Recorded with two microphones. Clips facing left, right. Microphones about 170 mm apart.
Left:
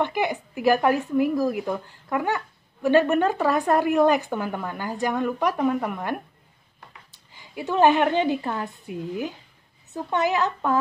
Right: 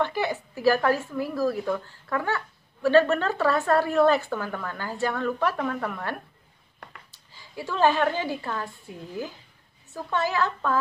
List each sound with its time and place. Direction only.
0.0 s a woman's voice: 15° left (ahead or behind)
7.3 s speech: 20° left (ahead or behind)